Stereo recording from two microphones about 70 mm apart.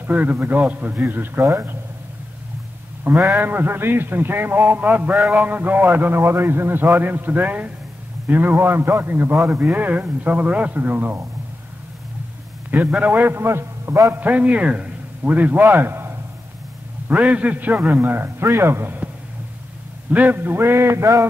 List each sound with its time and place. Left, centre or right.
0.0 s a man's voice: right
3.3 s a man's voice: right
13.0 s a man's voice: right
13.5 s a man's voice: right
14.1 s a man's voice: right
17.1 s a man's voice: right
20.1 s a man's voice: right